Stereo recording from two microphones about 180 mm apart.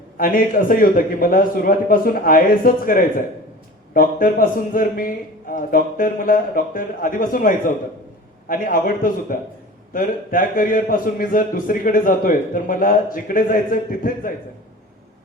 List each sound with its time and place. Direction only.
0.2 s a man's voice: 50° left (ahead or behind)